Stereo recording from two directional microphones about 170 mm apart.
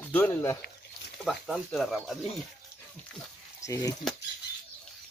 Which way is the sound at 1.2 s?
Centre (ahead or behind).